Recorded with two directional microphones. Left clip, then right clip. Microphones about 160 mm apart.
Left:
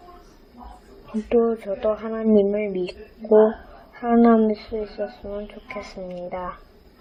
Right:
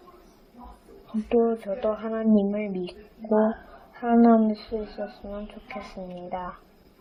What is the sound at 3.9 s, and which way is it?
Speech, 10° left (ahead or behind).